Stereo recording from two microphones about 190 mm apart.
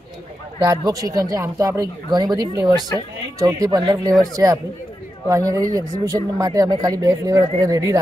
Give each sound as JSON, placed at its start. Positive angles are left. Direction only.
{"t": 0.6, "sound": "speech", "side_deg": -20}
{"t": 2.4, "sound": "speech", "side_deg": 20}
{"t": 3.3, "sound": "speech", "side_deg": -15}